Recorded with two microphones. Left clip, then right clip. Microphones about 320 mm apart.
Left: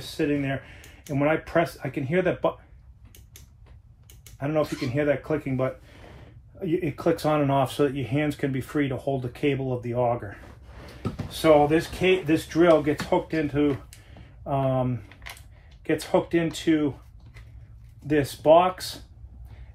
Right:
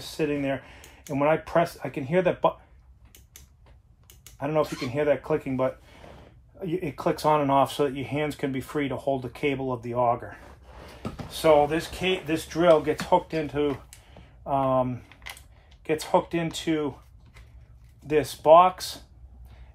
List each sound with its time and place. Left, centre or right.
0.2 s speech: centre
4.2 s speech: centre
18.0 s speech: centre